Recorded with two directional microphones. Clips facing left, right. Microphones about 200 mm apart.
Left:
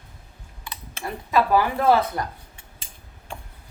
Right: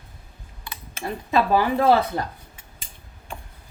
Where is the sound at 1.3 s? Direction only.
25° right (ahead or behind).